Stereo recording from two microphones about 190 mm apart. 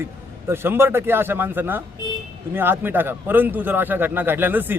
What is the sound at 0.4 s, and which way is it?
A man's voice, 10° right (ahead or behind).